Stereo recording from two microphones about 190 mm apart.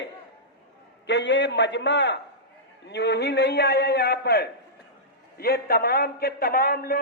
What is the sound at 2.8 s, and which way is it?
A man's voice, 60° left (ahead or behind).